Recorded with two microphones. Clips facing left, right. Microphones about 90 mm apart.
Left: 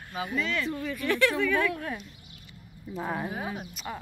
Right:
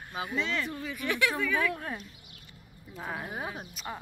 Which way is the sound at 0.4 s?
25° right (ahead or behind).